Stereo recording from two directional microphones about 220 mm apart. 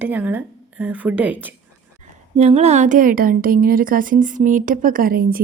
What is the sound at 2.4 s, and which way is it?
Speech, 30° right (ahead or behind).